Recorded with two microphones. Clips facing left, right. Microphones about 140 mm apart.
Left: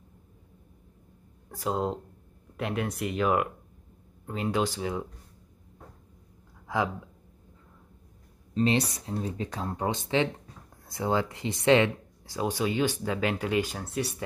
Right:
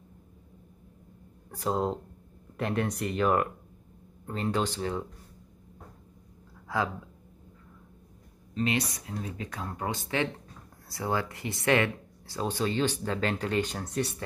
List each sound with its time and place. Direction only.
1.5 s speech: 5° left (ahead or behind)
6.7 s speech: 15° left (ahead or behind)
8.5 s speech: 30° left (ahead or behind); by 14.1 s 5° left (ahead or behind)